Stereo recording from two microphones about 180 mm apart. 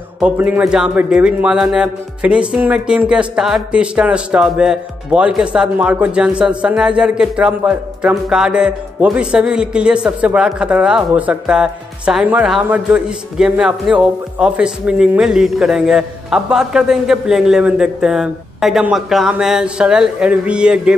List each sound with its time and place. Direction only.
0.2 s speech: 10° right (ahead or behind)